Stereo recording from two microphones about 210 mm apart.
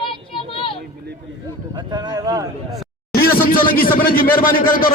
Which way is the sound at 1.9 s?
20° right (ahead or behind).